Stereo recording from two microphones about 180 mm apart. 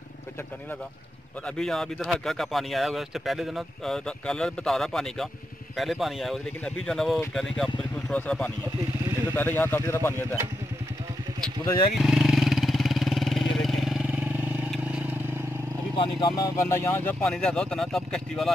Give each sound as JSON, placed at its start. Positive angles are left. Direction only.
{"t": 1.6, "sound": "speech", "side_deg": 0}
{"t": 11.6, "sound": "speech", "side_deg": 25}
{"t": 12.0, "sound": "vehicle", "side_deg": 0}
{"t": 16.0, "sound": "speech", "side_deg": 25}